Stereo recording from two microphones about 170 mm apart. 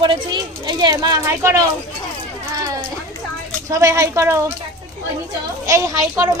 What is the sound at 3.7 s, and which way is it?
Speech, 20° right (ahead or behind).